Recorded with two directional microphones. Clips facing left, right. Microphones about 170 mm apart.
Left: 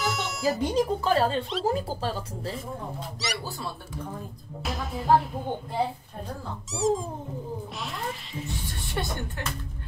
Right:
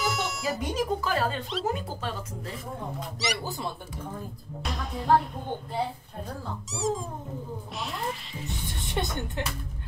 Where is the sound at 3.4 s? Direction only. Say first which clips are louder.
Right 2 dB; 20° right (ahead or behind).